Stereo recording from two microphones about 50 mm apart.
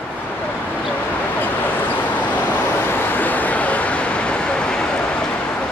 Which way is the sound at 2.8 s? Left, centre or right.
Left.